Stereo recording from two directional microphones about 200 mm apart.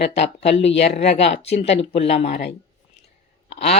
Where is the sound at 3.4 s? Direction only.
30° left (ahead or behind).